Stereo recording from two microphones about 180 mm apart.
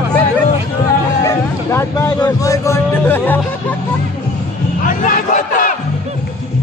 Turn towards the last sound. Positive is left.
turn(degrees=45)  # may be behind; listen again after turning